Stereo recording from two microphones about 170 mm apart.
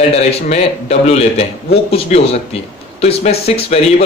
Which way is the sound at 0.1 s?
40° left (ahead or behind).